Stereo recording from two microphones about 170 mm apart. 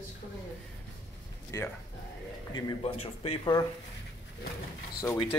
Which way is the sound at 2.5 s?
30° left (ahead or behind).